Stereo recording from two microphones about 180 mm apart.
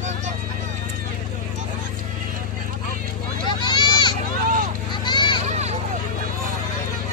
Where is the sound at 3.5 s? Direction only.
25° left (ahead or behind).